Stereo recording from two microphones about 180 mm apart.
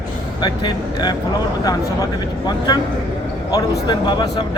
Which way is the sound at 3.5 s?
25° left (ahead or behind).